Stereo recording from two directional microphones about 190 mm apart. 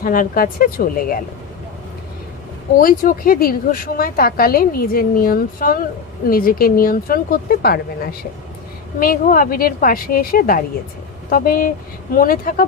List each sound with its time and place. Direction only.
0.0 s speech: 50° left (ahead or behind)
2.7 s speech: 45° left (ahead or behind)
9.0 s speech: 50° left (ahead or behind)